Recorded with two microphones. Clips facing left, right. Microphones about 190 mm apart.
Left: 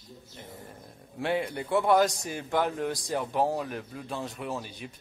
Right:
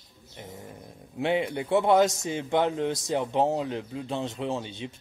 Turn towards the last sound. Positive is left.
turn(degrees=-25)  # may be behind; listen again after turning